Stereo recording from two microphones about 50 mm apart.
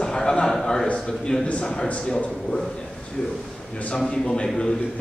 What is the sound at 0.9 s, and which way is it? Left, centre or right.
A man's voice, centre.